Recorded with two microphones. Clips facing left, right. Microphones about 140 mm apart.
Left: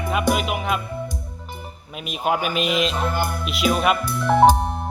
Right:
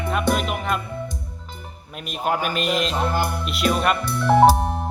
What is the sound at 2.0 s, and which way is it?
Speech, 5° left (ahead or behind).